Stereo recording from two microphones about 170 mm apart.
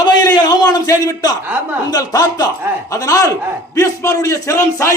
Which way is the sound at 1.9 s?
20° left (ahead or behind).